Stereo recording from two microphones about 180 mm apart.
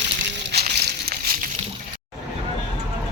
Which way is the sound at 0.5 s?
65° right (ahead or behind).